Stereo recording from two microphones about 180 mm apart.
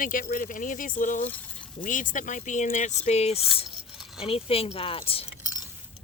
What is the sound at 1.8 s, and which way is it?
Speech, 45° left (ahead or behind).